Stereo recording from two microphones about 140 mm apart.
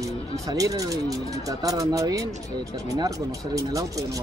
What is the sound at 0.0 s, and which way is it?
Speech, 25° right (ahead or behind).